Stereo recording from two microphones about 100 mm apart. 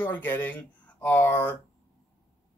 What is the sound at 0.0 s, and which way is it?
Speech, 20° left (ahead or behind).